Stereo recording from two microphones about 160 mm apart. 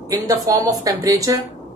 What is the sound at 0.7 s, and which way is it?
Speech, 20° right (ahead or behind).